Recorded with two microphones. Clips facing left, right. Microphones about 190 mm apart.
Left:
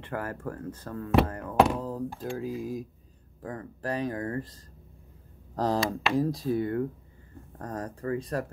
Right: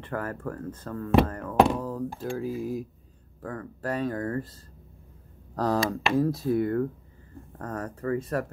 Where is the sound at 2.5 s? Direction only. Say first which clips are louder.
Right 2 dB; 25° right (ahead or behind).